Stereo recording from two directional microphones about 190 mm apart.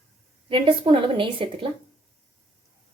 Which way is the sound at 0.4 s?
25° right (ahead or behind).